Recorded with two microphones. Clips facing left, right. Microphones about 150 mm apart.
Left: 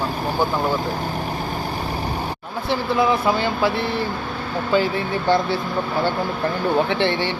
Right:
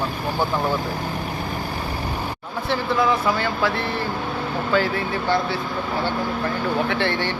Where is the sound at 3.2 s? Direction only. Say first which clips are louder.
Left 2 dB; 20° left (ahead or behind).